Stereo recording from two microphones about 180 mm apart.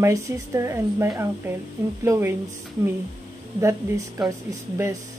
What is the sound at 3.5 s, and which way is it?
Speech, 15° right (ahead or behind).